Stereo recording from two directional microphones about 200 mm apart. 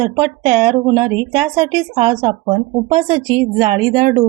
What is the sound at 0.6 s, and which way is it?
Speech, 25° right (ahead or behind).